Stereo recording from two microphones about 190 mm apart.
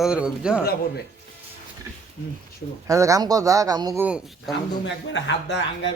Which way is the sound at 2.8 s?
15° right (ahead or behind).